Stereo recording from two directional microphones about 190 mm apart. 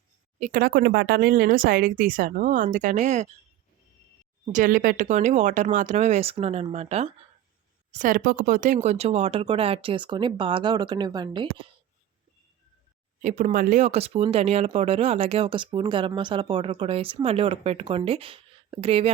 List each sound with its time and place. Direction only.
0.3 s speech: 40° right (ahead or behind)
4.4 s speech: 45° right (ahead or behind)
7.9 s speech: 45° right (ahead or behind); by 11.6 s 25° right (ahead or behind)
13.2 s speech: 45° right (ahead or behind)